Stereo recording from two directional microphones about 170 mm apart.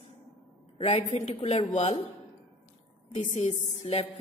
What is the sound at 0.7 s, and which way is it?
A woman's voice, 35° left (ahead or behind).